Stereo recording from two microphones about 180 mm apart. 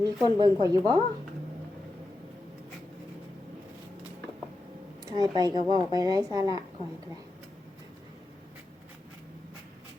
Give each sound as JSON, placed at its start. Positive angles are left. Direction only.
{"t": 0.0, "sound": "speech", "side_deg": -25}
{"t": 5.1, "sound": "speech", "side_deg": -20}